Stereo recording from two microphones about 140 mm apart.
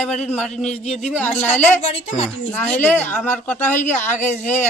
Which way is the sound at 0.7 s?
45° left (ahead or behind).